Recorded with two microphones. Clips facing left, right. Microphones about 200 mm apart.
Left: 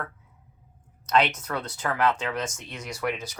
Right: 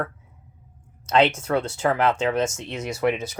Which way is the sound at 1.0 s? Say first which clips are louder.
Right 5 dB; 25° right (ahead or behind).